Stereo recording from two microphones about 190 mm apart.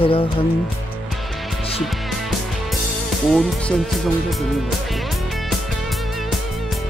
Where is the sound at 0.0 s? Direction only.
30° left (ahead or behind).